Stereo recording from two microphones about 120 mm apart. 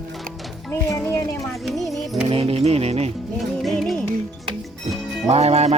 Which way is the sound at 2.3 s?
55° right (ahead or behind).